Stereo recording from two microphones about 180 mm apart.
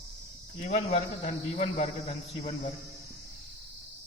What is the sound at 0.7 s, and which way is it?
A man's voice, 40° left (ahead or behind).